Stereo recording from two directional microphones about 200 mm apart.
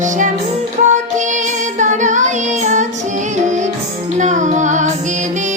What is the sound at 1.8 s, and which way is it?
Child singing, 40° right (ahead or behind).